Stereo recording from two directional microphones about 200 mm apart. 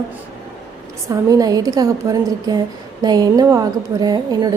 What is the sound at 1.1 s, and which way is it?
A woman's voice, 15° right (ahead or behind).